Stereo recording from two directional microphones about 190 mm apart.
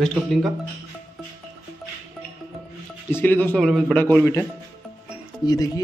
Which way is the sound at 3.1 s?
10° left (ahead or behind).